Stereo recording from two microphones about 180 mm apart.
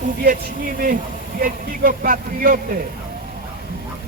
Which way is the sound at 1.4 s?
50° right (ahead or behind).